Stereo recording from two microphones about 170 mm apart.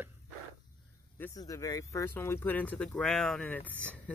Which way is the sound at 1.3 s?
20° left (ahead or behind).